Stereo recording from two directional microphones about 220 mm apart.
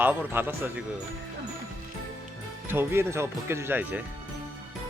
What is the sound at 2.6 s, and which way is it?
Speech, 10° right (ahead or behind).